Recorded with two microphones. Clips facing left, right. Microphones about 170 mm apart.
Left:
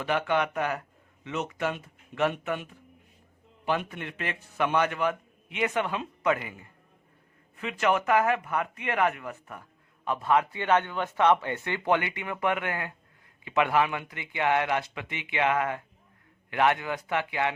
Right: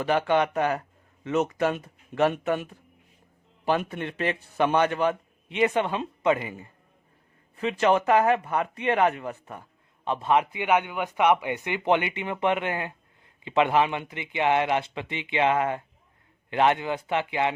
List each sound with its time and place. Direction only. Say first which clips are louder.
0.0 s a man's voice: right 4 dB; 35° right (ahead or behind)
1.2 s a man's voice: right 6 dB; 45° right (ahead or behind)
3.7 s a man's voice: right 4 dB; 35° right (ahead or behind)